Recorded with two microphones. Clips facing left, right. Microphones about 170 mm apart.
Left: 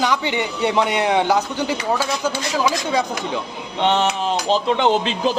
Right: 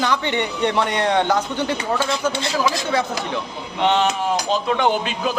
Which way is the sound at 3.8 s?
25° left (ahead or behind).